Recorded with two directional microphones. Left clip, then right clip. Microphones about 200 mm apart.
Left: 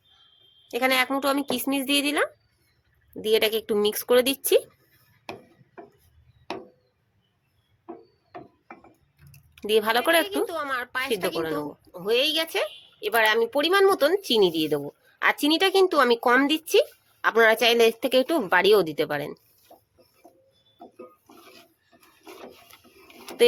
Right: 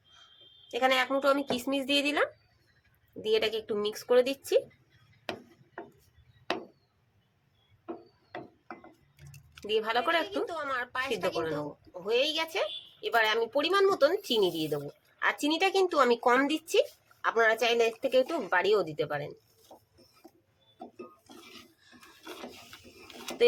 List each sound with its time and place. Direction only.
0.7 s speech: 50° left (ahead or behind)
9.6 s speech: 55° left (ahead or behind)
23.0 s a sound: 15° right (ahead or behind)